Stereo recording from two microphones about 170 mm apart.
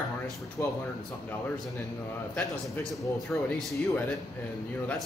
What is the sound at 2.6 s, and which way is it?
Speech, 5° left (ahead or behind).